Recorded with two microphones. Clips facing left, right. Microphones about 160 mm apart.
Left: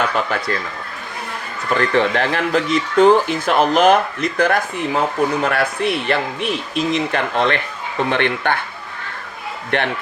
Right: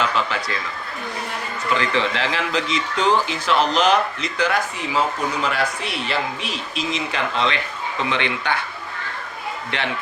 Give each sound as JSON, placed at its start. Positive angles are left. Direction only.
{"t": 0.3, "sound": "speech", "side_deg": 50}
{"t": 1.7, "sound": "speech", "side_deg": 50}
{"t": 9.7, "sound": "speech", "side_deg": 50}